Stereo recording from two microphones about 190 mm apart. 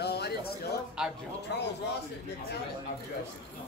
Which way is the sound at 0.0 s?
60° left (ahead or behind).